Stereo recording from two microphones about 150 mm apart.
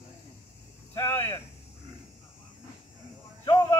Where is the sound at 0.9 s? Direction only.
15° left (ahead or behind).